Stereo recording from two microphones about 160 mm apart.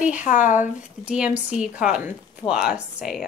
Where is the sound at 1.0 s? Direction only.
5° right (ahead or behind).